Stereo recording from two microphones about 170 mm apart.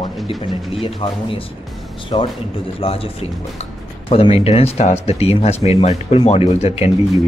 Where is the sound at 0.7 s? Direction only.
30° left (ahead or behind).